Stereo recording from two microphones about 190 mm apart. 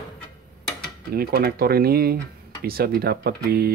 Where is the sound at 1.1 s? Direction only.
55° right (ahead or behind).